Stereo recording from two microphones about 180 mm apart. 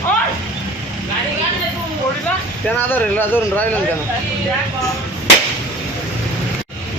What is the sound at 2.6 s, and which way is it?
Speech, 10° left (ahead or behind).